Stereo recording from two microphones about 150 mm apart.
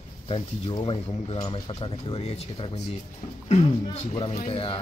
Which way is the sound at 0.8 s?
35° left (ahead or behind).